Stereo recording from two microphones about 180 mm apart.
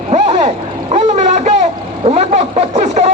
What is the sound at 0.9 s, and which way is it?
Vehicle, 40° right (ahead or behind).